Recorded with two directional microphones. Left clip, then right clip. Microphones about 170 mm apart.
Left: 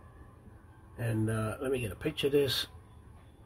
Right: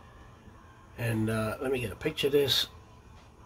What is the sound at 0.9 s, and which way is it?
Speech, 5° left (ahead or behind).